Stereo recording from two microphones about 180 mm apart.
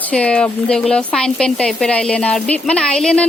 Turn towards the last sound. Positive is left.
turn(degrees=5)  # may be behind; listen again after turning